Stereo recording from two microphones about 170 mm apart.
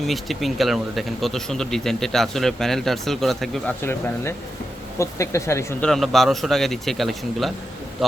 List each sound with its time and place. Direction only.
0.0 s speech: centre (ahead or behind)
3.8 s speech: 15° left (ahead or behind)
5.8 s speech: centre (ahead or behind)